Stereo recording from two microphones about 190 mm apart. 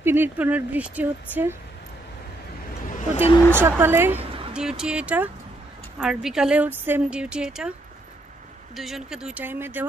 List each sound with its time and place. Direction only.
0.0 s speech: 10° right (ahead or behind)
2.9 s a sound: 40° left (ahead or behind)
3.5 s a woman's voice: 10° right (ahead or behind)
8.7 s speech: centre (ahead or behind)